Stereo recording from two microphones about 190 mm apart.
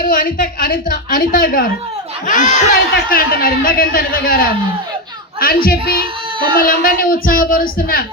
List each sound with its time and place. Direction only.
0.0 s a woman's voice: 45° left (ahead or behind)